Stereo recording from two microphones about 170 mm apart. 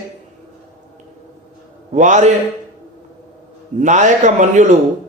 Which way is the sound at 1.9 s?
45° right (ahead or behind).